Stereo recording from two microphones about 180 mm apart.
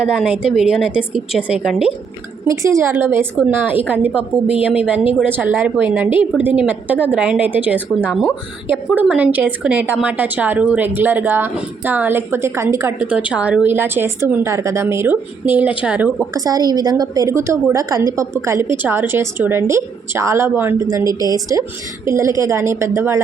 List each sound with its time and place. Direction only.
0.0 s a woman's voice: 5° right (ahead or behind)
2.5 s speech: 15° right (ahead or behind)
21.0 s a woman's voice: 20° left (ahead or behind)
21.2 s a woman's voice: 20° right (ahead or behind)